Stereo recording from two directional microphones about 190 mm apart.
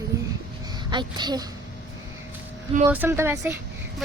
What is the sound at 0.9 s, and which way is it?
Speech, 25° right (ahead or behind).